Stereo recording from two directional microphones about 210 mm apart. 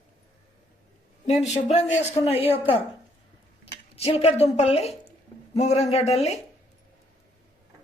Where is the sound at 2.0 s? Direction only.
30° left (ahead or behind).